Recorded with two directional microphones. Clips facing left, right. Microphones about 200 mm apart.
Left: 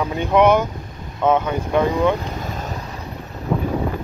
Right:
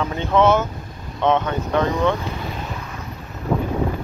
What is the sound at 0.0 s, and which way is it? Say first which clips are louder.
Speech: left 2 dB; 15° left (ahead or behind).